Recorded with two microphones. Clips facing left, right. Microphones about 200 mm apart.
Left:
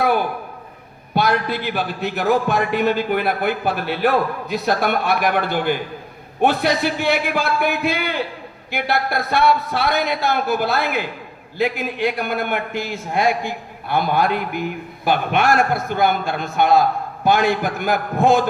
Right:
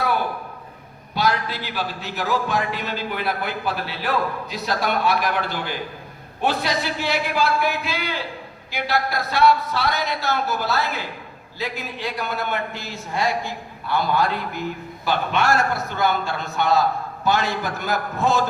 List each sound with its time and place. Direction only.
1.1 s a man's voice: 55° left (ahead or behind)